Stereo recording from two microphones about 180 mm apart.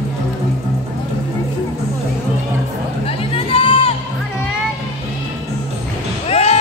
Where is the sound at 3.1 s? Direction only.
30° left (ahead or behind).